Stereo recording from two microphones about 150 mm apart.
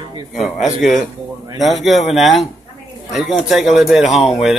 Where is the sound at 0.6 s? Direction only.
Centre (ahead or behind).